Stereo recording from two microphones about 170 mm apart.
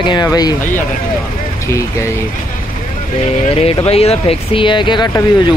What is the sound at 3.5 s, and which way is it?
Speech, 35° left (ahead or behind).